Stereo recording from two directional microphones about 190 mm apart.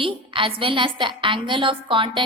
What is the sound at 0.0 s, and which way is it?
A woman's voice, 25° right (ahead or behind).